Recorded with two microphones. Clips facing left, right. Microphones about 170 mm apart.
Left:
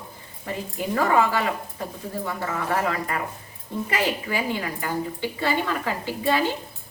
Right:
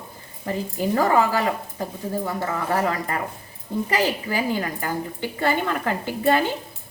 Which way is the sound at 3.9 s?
40° right (ahead or behind).